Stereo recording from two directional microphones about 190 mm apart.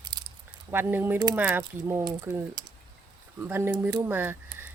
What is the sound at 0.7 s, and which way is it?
Speech, 10° right (ahead or behind).